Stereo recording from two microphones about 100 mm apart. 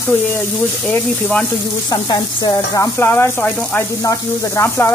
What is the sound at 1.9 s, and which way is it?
Speech, 40° left (ahead or behind).